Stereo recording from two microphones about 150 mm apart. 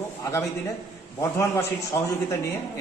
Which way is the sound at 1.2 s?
20° left (ahead or behind).